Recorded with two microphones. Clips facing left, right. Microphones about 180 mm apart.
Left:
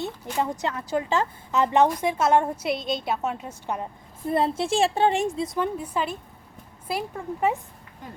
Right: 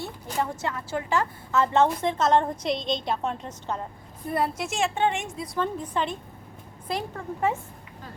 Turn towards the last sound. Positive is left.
turn(degrees=15)  # may be behind; listen again after turning